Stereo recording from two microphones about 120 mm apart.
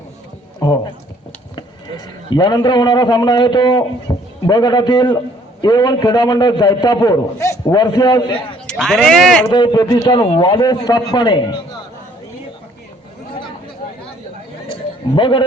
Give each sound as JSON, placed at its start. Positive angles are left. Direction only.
{"t": 0.6, "sound": "speech", "side_deg": 35}
{"t": 2.3, "sound": "a man's voice", "side_deg": 40}
{"t": 4.1, "sound": "a sound", "side_deg": 30}
{"t": 4.4, "sound": "a man's voice", "side_deg": 35}
{"t": 8.6, "sound": "speech", "side_deg": 5}
{"t": 9.5, "sound": "a man's voice", "side_deg": 40}
{"t": 10.2, "sound": "a man's voice", "side_deg": 45}
{"t": 14.7, "sound": "a sound", "side_deg": 45}